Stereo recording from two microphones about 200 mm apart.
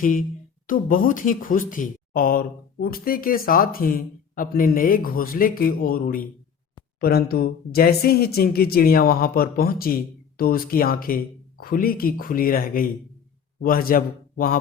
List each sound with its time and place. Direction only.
0.0 s speech: 40° left (ahead or behind)